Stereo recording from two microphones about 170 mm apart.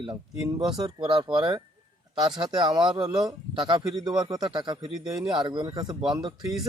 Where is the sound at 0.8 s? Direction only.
25° right (ahead or behind).